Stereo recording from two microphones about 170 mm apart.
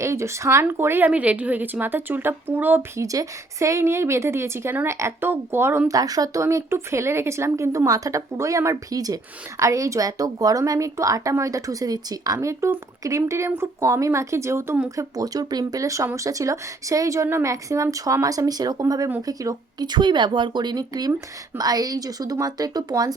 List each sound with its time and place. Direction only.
0.0 s speech: 15° right (ahead or behind)